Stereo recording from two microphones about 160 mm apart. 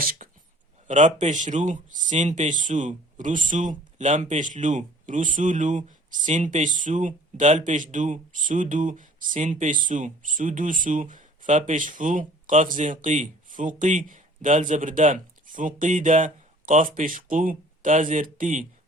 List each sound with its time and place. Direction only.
0.0 s speech: 60° right (ahead or behind)
0.9 s speech: 50° right (ahead or behind)